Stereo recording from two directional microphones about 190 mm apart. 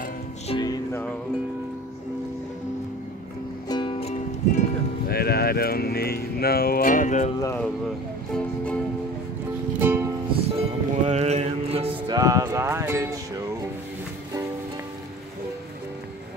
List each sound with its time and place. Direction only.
0.5 s music: 20° left (ahead or behind)
3.6 s speech: 25° left (ahead or behind); by 7.2 s 40° left (ahead or behind)
7.3 s speech: 15° left (ahead or behind)
8.3 s speech: 5° left (ahead or behind)
9.8 s music: 10° right (ahead or behind)
10.5 s music: 35° right (ahead or behind); by 13.2 s 15° right (ahead or behind)